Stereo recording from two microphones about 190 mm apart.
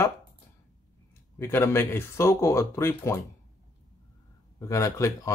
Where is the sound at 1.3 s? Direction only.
15° left (ahead or behind).